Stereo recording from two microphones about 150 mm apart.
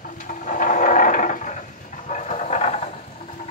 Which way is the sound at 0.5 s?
60° left (ahead or behind).